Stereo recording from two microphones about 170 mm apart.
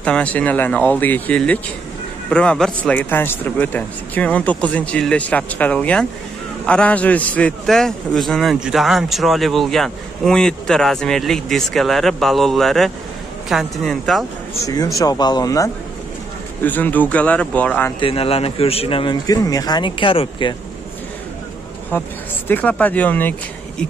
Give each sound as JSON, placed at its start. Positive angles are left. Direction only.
{"t": 0.0, "sound": "a man's voice", "side_deg": 5}
{"t": 14.6, "sound": "a man's voice", "side_deg": 20}
{"t": 18.0, "sound": "speech", "side_deg": 35}
{"t": 19.2, "sound": "speech", "side_deg": 20}
{"t": 21.9, "sound": "a man's voice", "side_deg": 10}